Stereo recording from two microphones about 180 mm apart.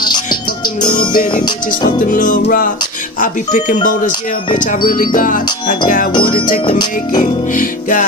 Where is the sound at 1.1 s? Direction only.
50° left (ahead or behind).